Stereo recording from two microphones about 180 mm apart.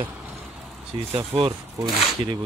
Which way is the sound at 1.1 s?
30° right (ahead or behind).